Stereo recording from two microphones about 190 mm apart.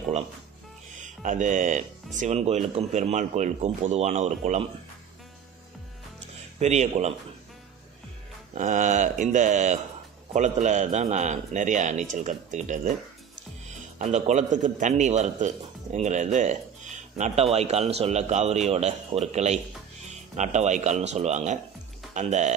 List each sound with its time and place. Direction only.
0.9 s a man's voice: 40° right (ahead or behind)
6.6 s a man's voice: 35° right (ahead or behind)
8.5 s a man's voice: 40° right (ahead or behind)
13.9 s a man's voice: 40° right (ahead or behind)